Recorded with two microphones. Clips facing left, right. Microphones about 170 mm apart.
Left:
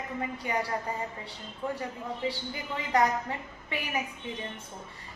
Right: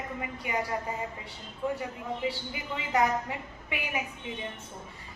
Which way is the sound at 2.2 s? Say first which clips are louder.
Left 1 dB; 15° right (ahead or behind).